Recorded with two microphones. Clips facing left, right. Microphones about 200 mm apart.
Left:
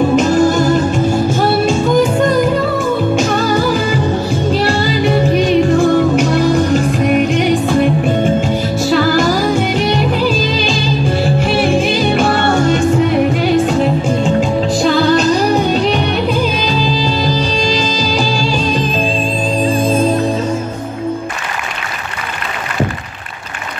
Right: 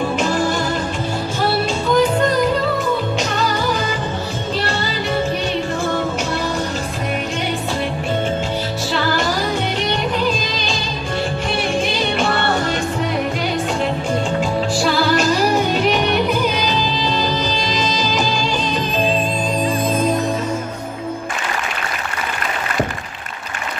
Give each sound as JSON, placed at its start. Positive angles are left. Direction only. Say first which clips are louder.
{"t": 0.1, "sound": "music", "louder": "left 8 dB", "side_deg": 45}
{"t": 3.2, "sound": "music", "louder": "left 6 dB", "side_deg": 50}
{"t": 8.9, "sound": "music", "louder": "left 8 dB", "side_deg": 50}
{"t": 12.0, "sound": "music", "louder": "left 6 dB", "side_deg": 45}
{"t": 17.4, "sound": "music", "louder": "left 5 dB", "side_deg": 30}
{"t": 19.6, "sound": "music", "louder": "left 6 dB", "side_deg": 30}